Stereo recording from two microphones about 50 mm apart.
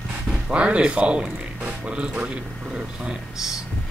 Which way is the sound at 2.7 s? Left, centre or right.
Centre.